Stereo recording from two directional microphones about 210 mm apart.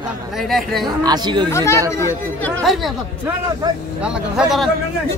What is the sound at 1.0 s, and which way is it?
Speech, 20° right (ahead or behind).